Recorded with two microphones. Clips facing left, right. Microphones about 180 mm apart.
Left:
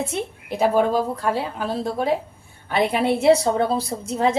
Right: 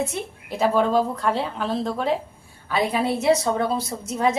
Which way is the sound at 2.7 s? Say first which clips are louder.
Left 2 dB; 25° left (ahead or behind).